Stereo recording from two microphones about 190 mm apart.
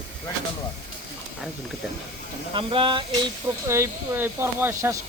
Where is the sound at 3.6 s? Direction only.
15° right (ahead or behind).